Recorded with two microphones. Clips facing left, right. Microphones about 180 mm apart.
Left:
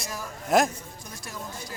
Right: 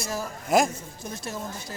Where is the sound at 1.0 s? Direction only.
25° right (ahead or behind).